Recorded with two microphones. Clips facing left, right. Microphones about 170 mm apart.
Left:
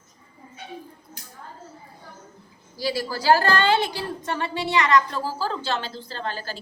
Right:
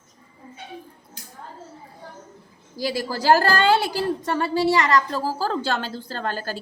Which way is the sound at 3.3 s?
40° right (ahead or behind).